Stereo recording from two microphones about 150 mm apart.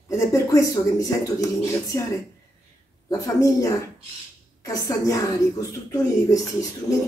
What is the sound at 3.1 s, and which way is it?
Speech, 20° left (ahead or behind).